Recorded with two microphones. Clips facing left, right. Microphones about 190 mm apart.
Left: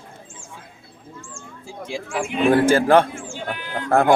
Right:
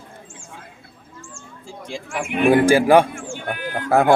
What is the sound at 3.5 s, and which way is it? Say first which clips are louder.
Speech: right 2 dB; 50° right (ahead or behind).